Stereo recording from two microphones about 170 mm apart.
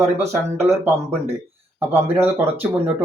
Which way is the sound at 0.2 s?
15° right (ahead or behind).